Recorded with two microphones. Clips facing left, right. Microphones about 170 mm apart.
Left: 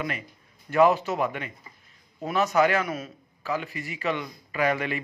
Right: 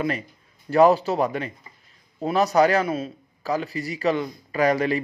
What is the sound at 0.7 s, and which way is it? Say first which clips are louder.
Speech: right 4 dB; 35° right (ahead or behind).